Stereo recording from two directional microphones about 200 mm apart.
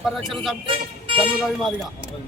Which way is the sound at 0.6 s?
25° right (ahead or behind).